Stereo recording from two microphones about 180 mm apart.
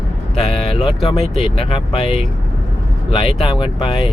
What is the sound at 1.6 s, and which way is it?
Speech, 30° left (ahead or behind).